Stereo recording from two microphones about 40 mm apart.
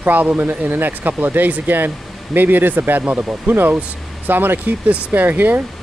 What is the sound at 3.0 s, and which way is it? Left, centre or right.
Speech, right.